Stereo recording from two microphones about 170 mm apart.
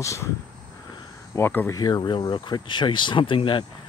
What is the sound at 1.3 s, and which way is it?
Speech, 10° left (ahead or behind).